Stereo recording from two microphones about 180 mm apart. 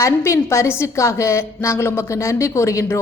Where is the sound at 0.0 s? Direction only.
15° left (ahead or behind).